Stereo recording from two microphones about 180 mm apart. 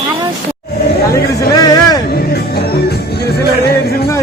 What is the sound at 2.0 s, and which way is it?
Music, 60° left (ahead or behind).